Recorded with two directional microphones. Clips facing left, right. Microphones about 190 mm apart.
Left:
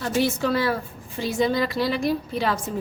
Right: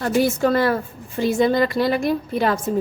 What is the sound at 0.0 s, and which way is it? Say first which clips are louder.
A woman's voice: right 5 dB; 50° right (ahead or behind).